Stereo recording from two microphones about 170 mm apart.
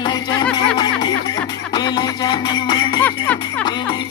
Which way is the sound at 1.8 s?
25° left (ahead or behind).